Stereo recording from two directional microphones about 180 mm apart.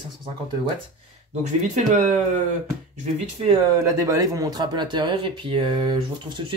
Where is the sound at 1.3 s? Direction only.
40° right (ahead or behind).